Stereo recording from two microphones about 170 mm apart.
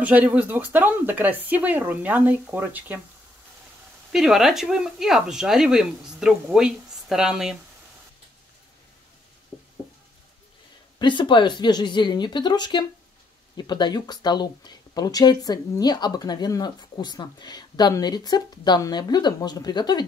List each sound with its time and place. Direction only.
0.0 s speech: 10° right (ahead or behind)
4.1 s speech: centre (ahead or behind)
11.0 s speech: 30° left (ahead or behind)